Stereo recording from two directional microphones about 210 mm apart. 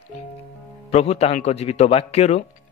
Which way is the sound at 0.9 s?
30° left (ahead or behind).